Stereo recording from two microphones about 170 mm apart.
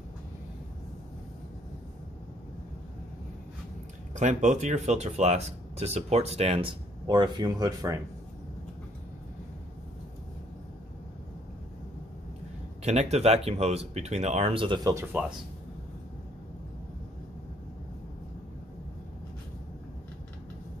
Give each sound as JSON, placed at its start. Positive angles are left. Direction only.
{"t": 4.1, "sound": "speech", "side_deg": -45}
{"t": 12.8, "sound": "speech", "side_deg": -40}